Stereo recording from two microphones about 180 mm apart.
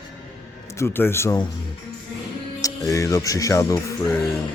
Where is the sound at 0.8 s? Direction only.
15° left (ahead or behind).